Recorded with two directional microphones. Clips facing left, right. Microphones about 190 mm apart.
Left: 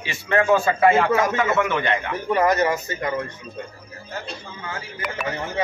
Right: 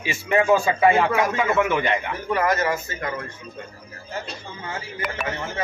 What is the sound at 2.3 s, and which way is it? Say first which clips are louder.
Speech: left 3 dB; 20° left (ahead or behind).